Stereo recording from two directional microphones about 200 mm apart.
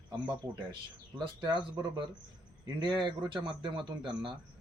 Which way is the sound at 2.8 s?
20° right (ahead or behind).